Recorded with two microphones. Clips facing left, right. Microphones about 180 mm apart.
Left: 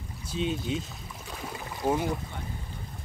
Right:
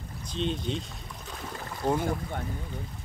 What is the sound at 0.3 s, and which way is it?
Speech, 5° left (ahead or behind).